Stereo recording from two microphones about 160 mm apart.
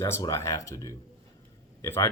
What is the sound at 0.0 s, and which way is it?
Speech, 20° left (ahead or behind).